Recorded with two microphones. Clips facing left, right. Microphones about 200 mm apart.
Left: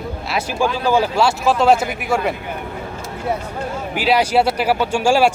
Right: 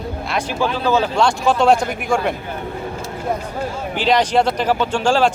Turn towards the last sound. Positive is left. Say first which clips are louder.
# left 1 dB
turn(degrees=10)  # may be behind; listen again after turning